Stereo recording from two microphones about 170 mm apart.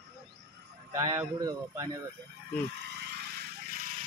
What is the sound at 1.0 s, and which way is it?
Speech, 20° right (ahead or behind).